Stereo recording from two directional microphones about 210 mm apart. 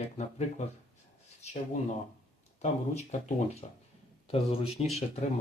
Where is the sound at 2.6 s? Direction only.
35° left (ahead or behind).